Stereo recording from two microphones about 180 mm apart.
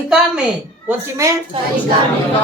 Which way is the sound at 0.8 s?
15° right (ahead or behind).